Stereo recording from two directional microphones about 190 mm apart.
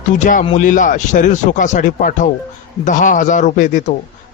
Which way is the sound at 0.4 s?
40° left (ahead or behind).